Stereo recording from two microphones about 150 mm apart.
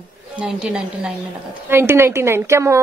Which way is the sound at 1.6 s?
15° right (ahead or behind).